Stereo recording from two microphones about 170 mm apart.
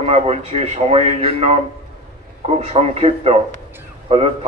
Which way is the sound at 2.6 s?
35° right (ahead or behind).